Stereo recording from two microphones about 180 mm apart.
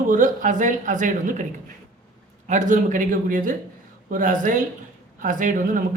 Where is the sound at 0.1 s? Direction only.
45° right (ahead or behind).